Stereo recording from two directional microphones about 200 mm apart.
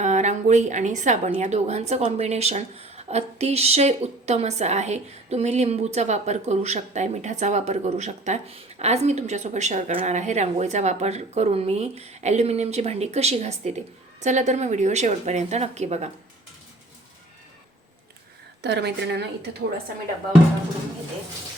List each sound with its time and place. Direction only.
0.0 s a woman's voice: 35° right (ahead or behind)
18.6 s a woman's voice: 55° right (ahead or behind)